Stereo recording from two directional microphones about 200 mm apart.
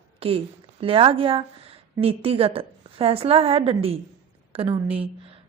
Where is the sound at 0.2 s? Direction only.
30° right (ahead or behind).